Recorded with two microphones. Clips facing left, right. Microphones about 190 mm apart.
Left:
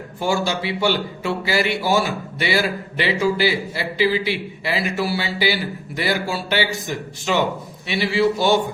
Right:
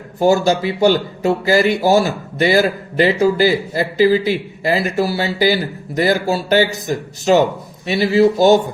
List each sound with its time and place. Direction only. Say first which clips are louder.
0.2 s a man's voice: right 8 dB; 40° right (ahead or behind)